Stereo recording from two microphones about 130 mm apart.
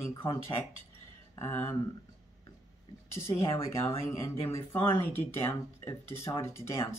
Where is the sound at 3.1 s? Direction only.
20° left (ahead or behind).